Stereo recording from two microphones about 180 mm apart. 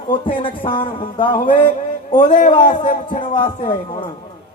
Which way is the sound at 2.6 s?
45° left (ahead or behind).